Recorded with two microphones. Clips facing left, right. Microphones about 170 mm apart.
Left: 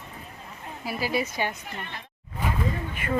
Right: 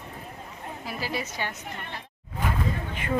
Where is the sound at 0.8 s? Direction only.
10° left (ahead or behind).